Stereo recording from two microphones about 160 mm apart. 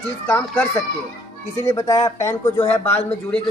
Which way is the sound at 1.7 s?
20° left (ahead or behind).